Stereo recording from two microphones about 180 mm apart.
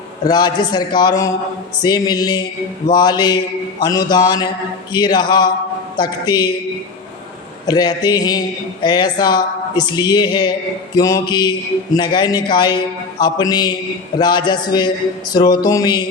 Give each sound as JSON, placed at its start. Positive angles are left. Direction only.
{"t": 0.3, "sound": "speech", "side_deg": 25}
{"t": 7.7, "sound": "speech", "side_deg": 20}